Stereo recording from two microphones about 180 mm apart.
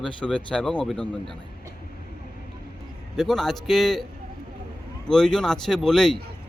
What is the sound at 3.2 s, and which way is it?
Speech, centre (ahead or behind).